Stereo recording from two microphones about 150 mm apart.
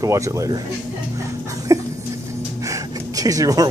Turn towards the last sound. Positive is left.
turn(degrees=-25)  # may be behind; listen again after turning